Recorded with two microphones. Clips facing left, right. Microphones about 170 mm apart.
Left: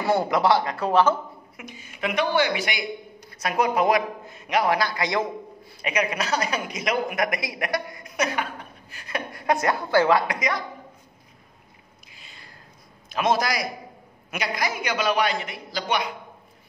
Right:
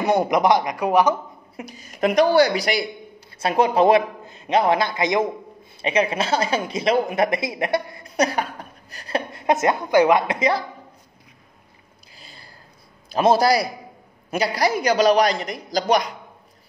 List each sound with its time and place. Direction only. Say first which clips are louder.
0.0 s speech: right 3 dB; 20° right (ahead or behind)
1.6 s a man's voice: right 8 dB; 35° right (ahead or behind)
12.1 s a sound: right 4 dB; 35° right (ahead or behind)
13.1 s a man's voice: right 7 dB; 35° right (ahead or behind)